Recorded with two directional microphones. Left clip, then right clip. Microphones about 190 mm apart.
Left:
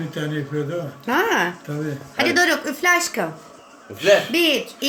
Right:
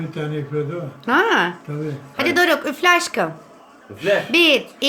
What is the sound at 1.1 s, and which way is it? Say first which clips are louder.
A woman's voice: right 3 dB; 10° right (ahead or behind).